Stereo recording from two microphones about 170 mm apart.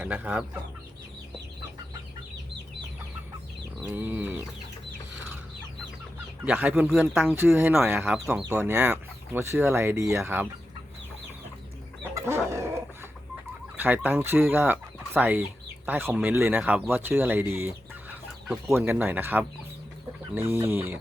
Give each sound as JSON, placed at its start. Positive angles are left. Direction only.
{"t": 0.0, "sound": "speech", "side_deg": -10}
{"t": 3.8, "sound": "speech", "side_deg": -10}
{"t": 6.4, "sound": "speech", "side_deg": -10}
{"t": 12.1, "sound": "chicken", "side_deg": -15}
{"t": 13.7, "sound": "speech", "side_deg": -10}
{"t": 18.1, "sound": "chicken", "side_deg": -5}
{"t": 18.7, "sound": "speech", "side_deg": -10}